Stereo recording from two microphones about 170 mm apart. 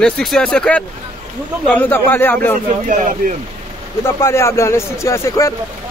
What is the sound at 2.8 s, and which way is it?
Speech, 50° right (ahead or behind).